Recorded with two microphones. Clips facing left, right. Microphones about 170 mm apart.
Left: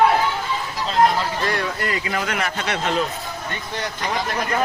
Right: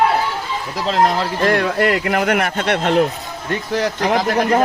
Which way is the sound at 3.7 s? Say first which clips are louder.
Right 9 dB; 75° right (ahead or behind).